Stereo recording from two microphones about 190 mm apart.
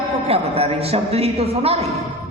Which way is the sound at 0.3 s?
30° right (ahead or behind).